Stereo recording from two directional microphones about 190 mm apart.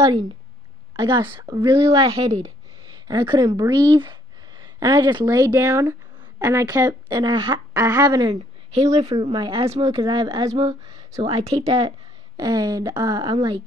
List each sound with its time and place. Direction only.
0.9 s a woman's voice: 25° right (ahead or behind)
1.9 s a woman's voice: 30° right (ahead or behind)
8.9 s a woman's voice: 30° right (ahead or behind)
10.9 s a sound: 20° right (ahead or behind)
11.2 s speech: 30° right (ahead or behind)
12.4 s a woman's voice: 20° right (ahead or behind)